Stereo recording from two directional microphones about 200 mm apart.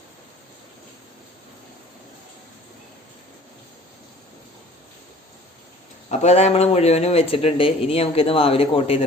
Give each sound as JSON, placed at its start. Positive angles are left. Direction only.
{"t": 6.1, "sound": "speech", "side_deg": 35}